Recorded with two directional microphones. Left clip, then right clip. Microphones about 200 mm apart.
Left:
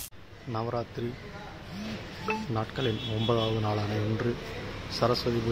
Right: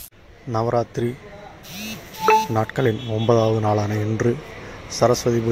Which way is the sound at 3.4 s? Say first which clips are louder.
Right 10 dB; 15° right (ahead or behind).